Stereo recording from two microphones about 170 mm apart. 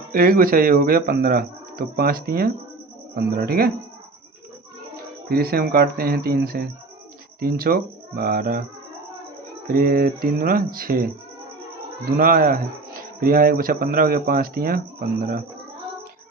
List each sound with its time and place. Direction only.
0.1 s speech: 60° right (ahead or behind)
5.3 s speech: 65° right (ahead or behind)
9.6 s speech: 55° right (ahead or behind)
12.1 s speech: 60° right (ahead or behind)